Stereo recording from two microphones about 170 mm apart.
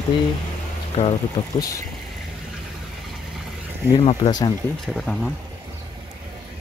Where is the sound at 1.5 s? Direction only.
20° left (ahead or behind).